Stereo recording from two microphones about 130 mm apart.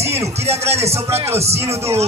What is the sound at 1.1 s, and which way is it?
Speech, 20° right (ahead or behind).